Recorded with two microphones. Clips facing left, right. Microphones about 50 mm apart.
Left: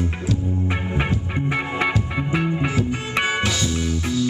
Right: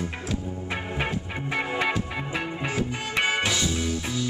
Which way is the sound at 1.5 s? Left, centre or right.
Centre.